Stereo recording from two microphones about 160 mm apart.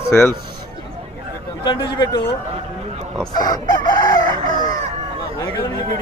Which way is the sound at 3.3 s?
25° left (ahead or behind).